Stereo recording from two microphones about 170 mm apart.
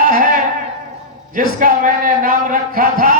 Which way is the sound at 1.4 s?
50° right (ahead or behind).